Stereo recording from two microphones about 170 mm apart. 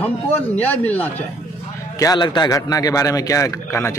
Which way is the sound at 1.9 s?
20° left (ahead or behind).